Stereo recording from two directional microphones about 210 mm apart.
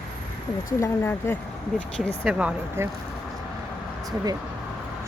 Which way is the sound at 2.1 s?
5° right (ahead or behind).